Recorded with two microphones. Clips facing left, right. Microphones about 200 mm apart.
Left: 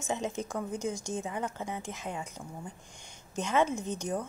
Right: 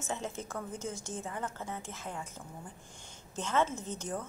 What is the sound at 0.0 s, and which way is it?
A woman's voice, 15° left (ahead or behind).